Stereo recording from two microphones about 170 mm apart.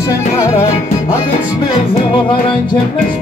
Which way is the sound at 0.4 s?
15° left (ahead or behind).